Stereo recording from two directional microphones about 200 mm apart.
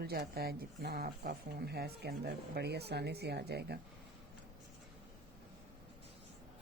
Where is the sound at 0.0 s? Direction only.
50° right (ahead or behind).